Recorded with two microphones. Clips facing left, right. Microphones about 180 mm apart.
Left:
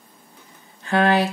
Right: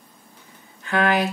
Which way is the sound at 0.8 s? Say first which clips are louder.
Left 2 dB; 30° left (ahead or behind).